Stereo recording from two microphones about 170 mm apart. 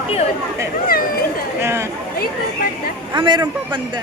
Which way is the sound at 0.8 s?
60° left (ahead or behind).